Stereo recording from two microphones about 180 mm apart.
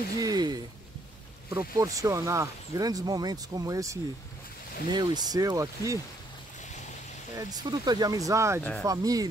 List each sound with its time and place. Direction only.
0.2 s speech: 20° right (ahead or behind)
7.3 s speech: 20° right (ahead or behind)